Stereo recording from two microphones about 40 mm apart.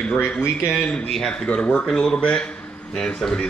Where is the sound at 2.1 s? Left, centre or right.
Left.